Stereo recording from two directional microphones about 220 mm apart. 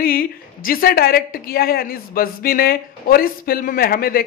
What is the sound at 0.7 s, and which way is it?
A woman's voice, 40° left (ahead or behind).